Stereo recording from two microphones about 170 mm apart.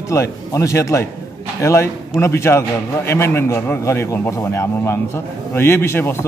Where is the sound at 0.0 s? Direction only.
15° left (ahead or behind).